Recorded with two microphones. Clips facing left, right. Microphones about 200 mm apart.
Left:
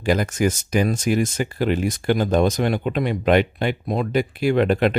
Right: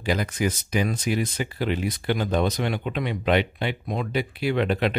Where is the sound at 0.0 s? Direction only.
50° left (ahead or behind).